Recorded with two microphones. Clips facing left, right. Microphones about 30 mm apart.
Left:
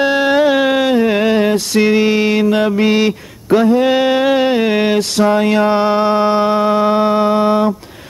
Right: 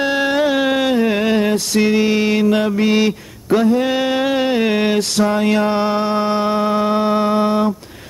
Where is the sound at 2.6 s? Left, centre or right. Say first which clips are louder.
Left 2 dB; left.